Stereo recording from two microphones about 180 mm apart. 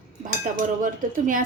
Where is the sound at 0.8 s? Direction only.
45° right (ahead or behind).